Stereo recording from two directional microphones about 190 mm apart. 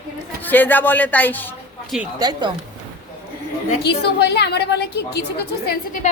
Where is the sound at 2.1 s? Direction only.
20° right (ahead or behind).